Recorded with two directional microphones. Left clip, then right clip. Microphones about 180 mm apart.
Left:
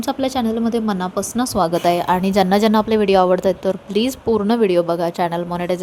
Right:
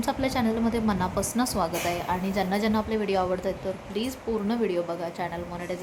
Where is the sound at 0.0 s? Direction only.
30° left (ahead or behind).